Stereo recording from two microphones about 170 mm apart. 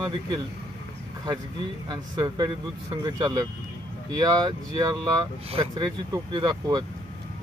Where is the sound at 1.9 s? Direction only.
25° right (ahead or behind).